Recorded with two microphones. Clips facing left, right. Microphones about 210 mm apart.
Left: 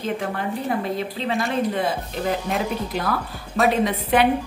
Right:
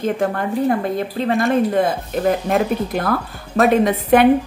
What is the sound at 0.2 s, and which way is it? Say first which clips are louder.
Speech: right 7 dB; 50° right (ahead or behind).